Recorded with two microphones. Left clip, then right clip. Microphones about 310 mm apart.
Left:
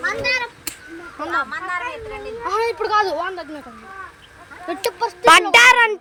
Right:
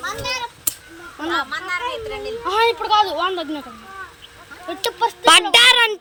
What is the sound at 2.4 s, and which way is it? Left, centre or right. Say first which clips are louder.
Speech: right 3 dB; left.